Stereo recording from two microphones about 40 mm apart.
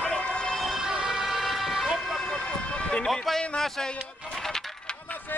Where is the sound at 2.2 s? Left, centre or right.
Centre.